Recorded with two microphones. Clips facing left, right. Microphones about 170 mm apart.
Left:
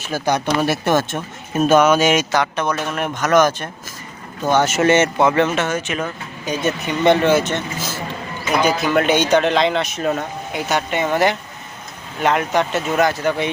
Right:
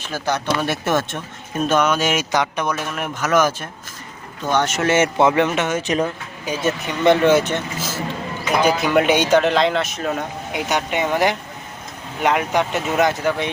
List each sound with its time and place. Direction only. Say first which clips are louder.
0.0 s speech: left 3 dB; 15° left (ahead or behind)
0.7 s speech: left 3 dB; centre (ahead or behind)
2.3 s speech: left 1 dB; 15° right (ahead or behind)
4.5 s speech: left 3 dB; 5° left (ahead or behind)
4.9 s speech: even; 15° right (ahead or behind)
5.8 s speech: right 4 dB; 35° right (ahead or behind)
6.4 s speech: left 1 dB; 5° right (ahead or behind)
7.3 s speech: right 1 dB; 15° right (ahead or behind)
8.6 s speech: right 1 dB; 5° right (ahead or behind)
10.2 s speech: even; 15° right (ahead or behind)